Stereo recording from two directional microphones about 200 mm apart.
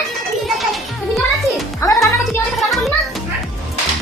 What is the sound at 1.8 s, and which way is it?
Music, 15° left (ahead or behind).